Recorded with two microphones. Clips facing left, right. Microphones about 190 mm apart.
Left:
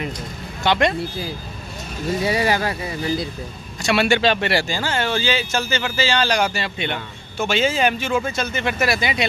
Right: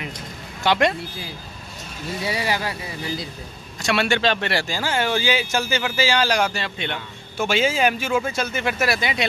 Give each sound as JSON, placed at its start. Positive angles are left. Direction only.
{"t": 0.7, "sound": "speech", "side_deg": -5}
{"t": 2.2, "sound": "speech", "side_deg": 50}
{"t": 3.8, "sound": "speech", "side_deg": 5}
{"t": 7.3, "sound": "speech", "side_deg": -10}